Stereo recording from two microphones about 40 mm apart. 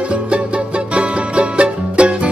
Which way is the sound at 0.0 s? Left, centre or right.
Right.